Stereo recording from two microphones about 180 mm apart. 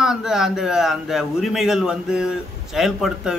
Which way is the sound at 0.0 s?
5° right (ahead or behind).